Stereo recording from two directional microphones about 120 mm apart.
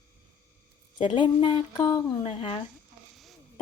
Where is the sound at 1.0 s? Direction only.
40° left (ahead or behind).